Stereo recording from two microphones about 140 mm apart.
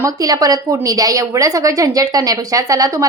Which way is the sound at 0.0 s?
25° right (ahead or behind).